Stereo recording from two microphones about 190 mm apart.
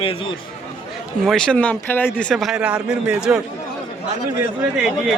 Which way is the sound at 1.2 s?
5° left (ahead or behind).